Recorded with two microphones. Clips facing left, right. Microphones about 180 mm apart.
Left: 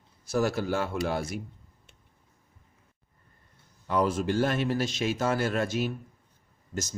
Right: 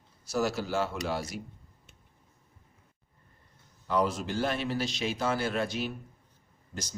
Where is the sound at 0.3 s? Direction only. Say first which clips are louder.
Left 3 dB; 55° left (ahead or behind).